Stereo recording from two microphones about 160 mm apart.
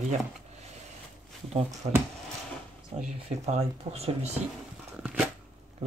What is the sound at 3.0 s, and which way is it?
Speech, 40° right (ahead or behind).